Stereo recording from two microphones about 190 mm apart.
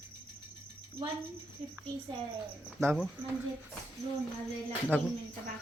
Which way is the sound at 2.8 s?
10° right (ahead or behind).